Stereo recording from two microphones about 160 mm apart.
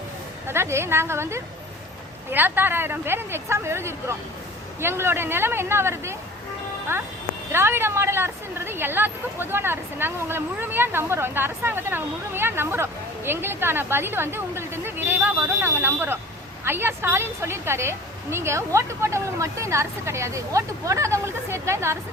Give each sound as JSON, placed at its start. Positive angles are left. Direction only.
{"t": 0.4, "sound": "a woman's voice", "side_deg": -15}